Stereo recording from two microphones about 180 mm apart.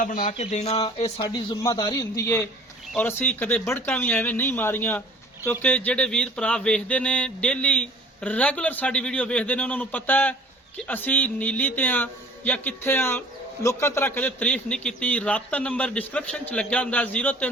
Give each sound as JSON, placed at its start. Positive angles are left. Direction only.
{"t": 0.0, "sound": "speech", "side_deg": 45}
{"t": 0.3, "sound": "a man's voice", "side_deg": 35}